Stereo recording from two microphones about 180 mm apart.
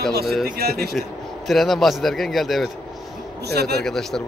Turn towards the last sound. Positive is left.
turn(degrees=0)  # may be behind; listen again after turning